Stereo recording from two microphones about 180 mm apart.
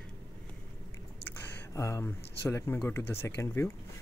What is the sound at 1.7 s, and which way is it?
Speech, 15° left (ahead or behind).